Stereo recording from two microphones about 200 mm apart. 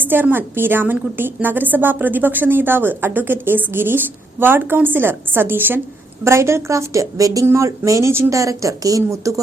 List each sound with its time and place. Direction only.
0.0 s a woman's voice: 10° right (ahead or behind)